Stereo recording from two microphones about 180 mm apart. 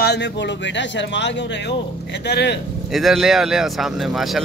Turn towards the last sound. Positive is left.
turn(degrees=0)  # may be behind; listen again after turning